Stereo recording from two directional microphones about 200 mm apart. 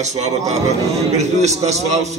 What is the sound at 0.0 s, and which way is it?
A man's voice, 35° right (ahead or behind).